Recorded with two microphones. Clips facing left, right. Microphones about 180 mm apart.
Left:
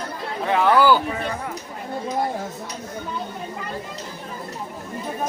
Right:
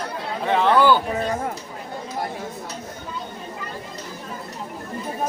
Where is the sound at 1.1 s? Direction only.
40° right (ahead or behind).